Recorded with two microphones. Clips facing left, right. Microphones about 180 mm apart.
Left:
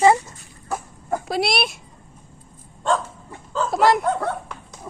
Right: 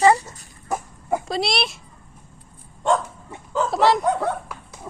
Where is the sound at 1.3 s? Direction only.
Centre (ahead or behind).